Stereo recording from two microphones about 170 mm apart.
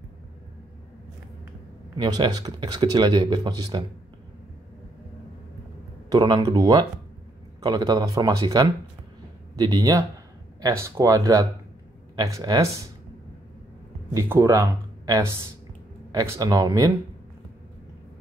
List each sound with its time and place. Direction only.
2.0 s speech: 25° right (ahead or behind)
6.0 s speech: 25° right (ahead or behind)
14.1 s speech: 20° right (ahead or behind)